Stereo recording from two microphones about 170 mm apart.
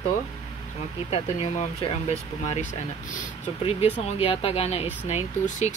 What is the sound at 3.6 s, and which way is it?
Speech, 35° left (ahead or behind).